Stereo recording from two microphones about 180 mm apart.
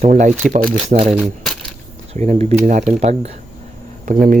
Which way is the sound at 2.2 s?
40° right (ahead or behind).